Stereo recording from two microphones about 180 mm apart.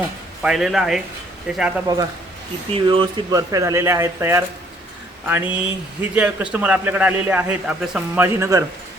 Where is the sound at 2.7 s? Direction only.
30° right (ahead or behind).